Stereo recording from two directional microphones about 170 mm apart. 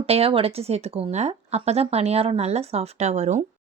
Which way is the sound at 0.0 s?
35° right (ahead or behind).